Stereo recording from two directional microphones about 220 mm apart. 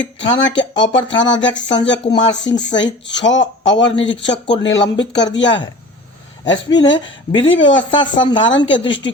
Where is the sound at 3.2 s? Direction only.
55° left (ahead or behind).